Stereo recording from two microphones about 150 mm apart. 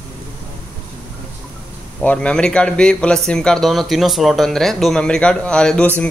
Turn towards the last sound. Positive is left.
turn(degrees=10)  # may be behind; listen again after turning